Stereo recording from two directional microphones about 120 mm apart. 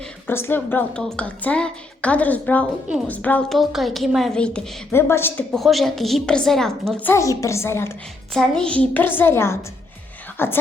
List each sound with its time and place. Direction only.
0.3 s a woman's voice: 20° left (ahead or behind)
3.5 s a woman's voice: centre (ahead or behind)
4.9 s a woman's voice: 20° left (ahead or behind)
5.5 s a woman's voice: centre (ahead or behind)
7.0 s a woman's voice: 25° left (ahead or behind)
8.3 s a woman's voice: 5° left (ahead or behind)